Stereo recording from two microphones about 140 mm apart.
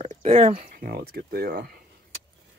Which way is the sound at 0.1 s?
55° right (ahead or behind).